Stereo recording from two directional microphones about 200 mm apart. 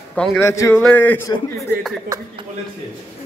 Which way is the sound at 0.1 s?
5° left (ahead or behind).